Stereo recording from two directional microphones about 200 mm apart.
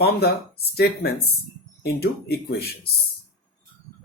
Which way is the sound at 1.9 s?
50° left (ahead or behind).